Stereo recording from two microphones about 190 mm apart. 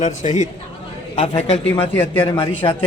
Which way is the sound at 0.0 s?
40° left (ahead or behind).